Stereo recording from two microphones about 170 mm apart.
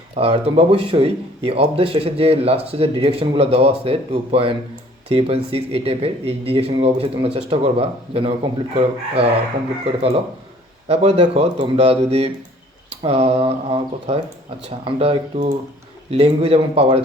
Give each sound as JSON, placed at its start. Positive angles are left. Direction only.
{"t": 0.2, "sound": "speech", "side_deg": -35}
{"t": 10.8, "sound": "speech", "side_deg": -35}